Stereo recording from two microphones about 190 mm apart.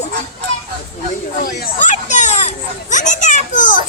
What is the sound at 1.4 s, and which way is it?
Children playing, 50° left (ahead or behind).